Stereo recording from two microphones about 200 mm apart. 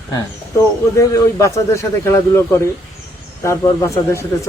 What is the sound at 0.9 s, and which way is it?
A man's voice, 15° left (ahead or behind).